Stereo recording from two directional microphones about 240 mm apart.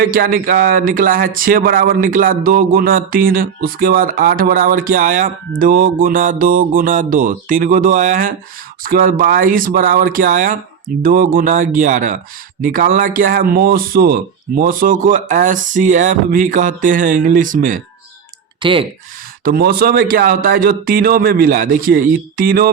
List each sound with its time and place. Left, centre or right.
0.0 s speech: right
18.6 s speech: right
19.5 s speech: right